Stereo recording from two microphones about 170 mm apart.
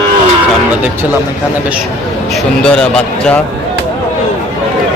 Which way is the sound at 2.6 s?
5° left (ahead or behind).